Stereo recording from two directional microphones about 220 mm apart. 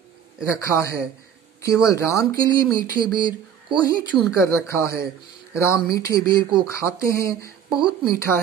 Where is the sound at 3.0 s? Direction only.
20° right (ahead or behind).